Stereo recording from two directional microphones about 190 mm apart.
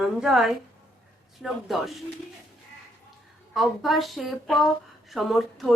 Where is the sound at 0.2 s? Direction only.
Centre (ahead or behind).